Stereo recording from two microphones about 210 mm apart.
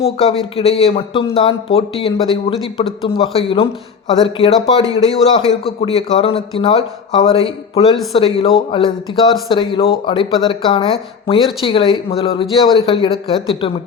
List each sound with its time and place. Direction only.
0.0 s speech: 30° left (ahead or behind)